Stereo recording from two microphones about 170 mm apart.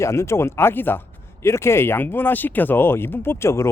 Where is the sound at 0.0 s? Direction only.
15° left (ahead or behind).